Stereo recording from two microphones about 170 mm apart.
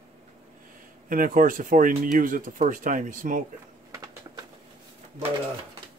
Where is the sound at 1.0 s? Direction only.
55° right (ahead or behind).